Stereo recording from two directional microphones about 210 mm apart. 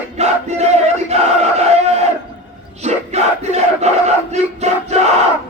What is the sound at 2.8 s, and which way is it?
Battle cry, 30° right (ahead or behind).